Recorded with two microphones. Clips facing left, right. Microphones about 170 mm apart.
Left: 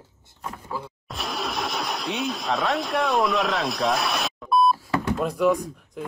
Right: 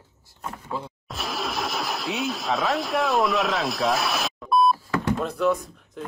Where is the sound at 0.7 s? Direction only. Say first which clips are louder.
Right 1 dB; 25° right (ahead or behind).